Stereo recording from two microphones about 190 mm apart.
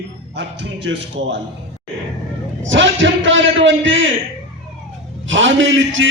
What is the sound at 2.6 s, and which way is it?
A man's voice, 75° right (ahead or behind).